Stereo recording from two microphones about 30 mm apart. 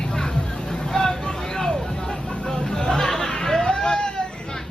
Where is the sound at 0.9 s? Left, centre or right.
Left.